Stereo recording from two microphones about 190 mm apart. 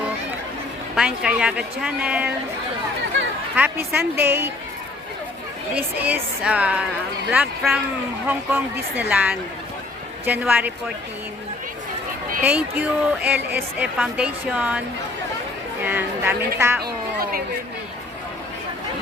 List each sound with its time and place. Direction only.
0.9 s a man's voice: 5° right (ahead or behind)
3.5 s a woman's voice: 10° right (ahead or behind)
5.7 s a woman's voice: 10° right (ahead or behind)
12.4 s a woman's voice: 10° right (ahead or behind)
15.8 s a woman's voice: 10° right (ahead or behind)
16.8 s a sound: 50° right (ahead or behind)